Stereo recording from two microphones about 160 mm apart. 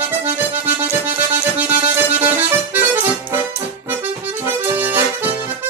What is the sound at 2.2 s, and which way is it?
Accordion, 15° right (ahead or behind).